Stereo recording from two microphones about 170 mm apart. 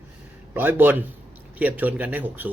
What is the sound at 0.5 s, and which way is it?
Speech, 10° right (ahead or behind).